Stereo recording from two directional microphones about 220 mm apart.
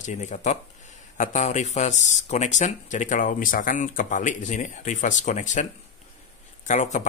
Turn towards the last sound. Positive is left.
turn(degrees=35)  # may be behind; listen again after turning